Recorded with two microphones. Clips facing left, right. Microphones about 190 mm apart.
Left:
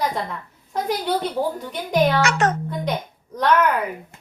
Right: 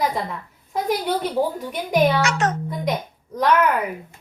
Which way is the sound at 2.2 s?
60° left (ahead or behind).